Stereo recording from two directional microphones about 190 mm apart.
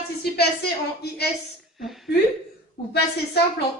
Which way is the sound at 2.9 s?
55° left (ahead or behind).